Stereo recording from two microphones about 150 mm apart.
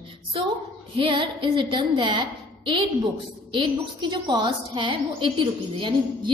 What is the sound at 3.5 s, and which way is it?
A woman's voice, 30° right (ahead or behind).